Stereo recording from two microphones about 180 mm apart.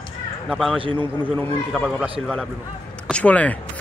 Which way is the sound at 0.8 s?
30° right (ahead or behind).